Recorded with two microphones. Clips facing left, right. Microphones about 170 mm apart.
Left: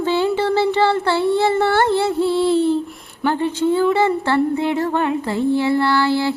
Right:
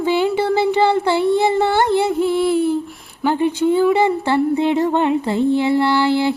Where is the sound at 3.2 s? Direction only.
15° right (ahead or behind).